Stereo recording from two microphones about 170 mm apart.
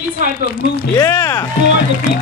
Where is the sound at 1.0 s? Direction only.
15° left (ahead or behind).